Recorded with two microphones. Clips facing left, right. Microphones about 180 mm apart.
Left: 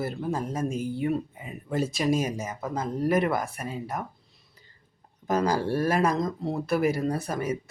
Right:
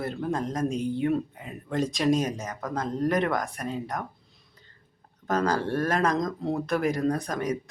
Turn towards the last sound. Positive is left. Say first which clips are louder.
# right 1 dB
turn(degrees=5)  # may be behind; listen again after turning